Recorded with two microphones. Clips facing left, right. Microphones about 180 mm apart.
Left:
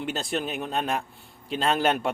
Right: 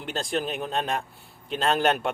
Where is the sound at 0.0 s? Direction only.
Centre (ahead or behind).